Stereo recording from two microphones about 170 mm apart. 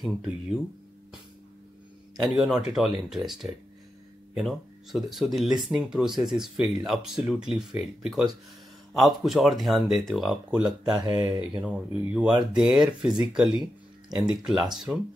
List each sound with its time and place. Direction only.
0.0 s speech: centre (ahead or behind)
2.2 s speech: centre (ahead or behind)
11.0 s speech: 20° right (ahead or behind)
11.5 s speech: 5° right (ahead or behind)